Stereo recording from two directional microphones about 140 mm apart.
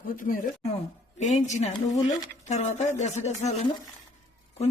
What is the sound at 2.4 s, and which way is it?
Speech, 55° left (ahead or behind).